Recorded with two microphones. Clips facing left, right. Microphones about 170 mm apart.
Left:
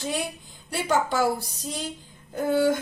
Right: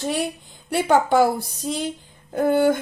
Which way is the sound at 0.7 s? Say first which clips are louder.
Right 7 dB; 60° right (ahead or behind).